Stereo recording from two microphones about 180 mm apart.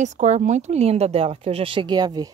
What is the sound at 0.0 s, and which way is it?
Speech, 40° right (ahead or behind).